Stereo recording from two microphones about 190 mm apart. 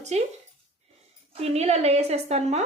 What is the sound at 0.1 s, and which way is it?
Speech, 35° right (ahead or behind).